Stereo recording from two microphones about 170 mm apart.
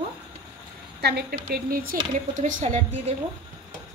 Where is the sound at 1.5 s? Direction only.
60° right (ahead or behind).